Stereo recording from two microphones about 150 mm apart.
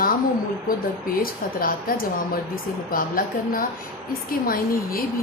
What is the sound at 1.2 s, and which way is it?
Speech, 75° left (ahead or behind).